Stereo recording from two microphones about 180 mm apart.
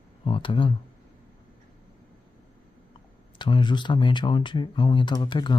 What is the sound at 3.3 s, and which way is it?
Speech, 25° left (ahead or behind).